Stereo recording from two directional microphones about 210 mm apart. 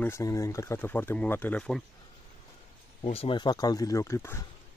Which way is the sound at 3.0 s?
25° left (ahead or behind).